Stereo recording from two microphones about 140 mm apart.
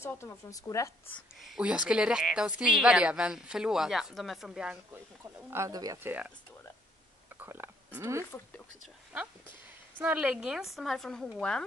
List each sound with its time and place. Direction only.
0.0 s speech: 15° left (ahead or behind)
1.4 s a woman's voice: 5° right (ahead or behind)
5.2 s speech: 20° right (ahead or behind)
6.0 s speech: 10° right (ahead or behind)
7.3 s speech: 15° right (ahead or behind)
9.9 s a woman's voice: 10° right (ahead or behind); by 11.6 s 5° left (ahead or behind)